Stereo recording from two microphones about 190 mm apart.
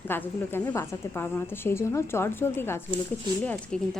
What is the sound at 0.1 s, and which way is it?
Speech, 10° left (ahead or behind).